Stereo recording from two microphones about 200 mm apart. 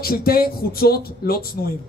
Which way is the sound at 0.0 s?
50° left (ahead or behind).